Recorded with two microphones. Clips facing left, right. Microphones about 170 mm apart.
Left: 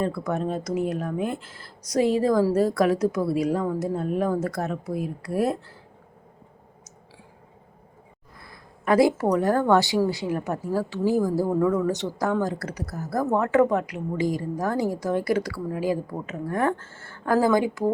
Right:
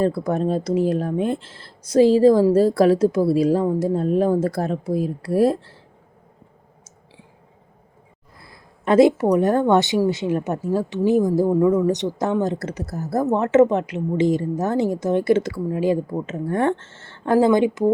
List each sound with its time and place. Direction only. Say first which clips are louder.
0.0 s speech: right 6 dB; 35° right (ahead or behind)
8.4 s a sound: even; 25° right (ahead or behind)
9.3 s speech: right 3 dB; 20° right (ahead or behind)